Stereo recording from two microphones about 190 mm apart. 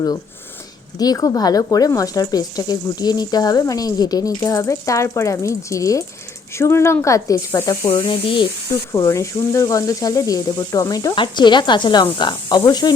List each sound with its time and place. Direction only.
0.9 s speech: 20° left (ahead or behind)